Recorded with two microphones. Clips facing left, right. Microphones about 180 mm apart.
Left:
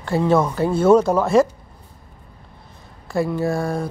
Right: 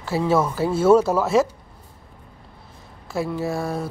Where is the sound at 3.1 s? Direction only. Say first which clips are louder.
Left 4 dB; centre (ahead or behind).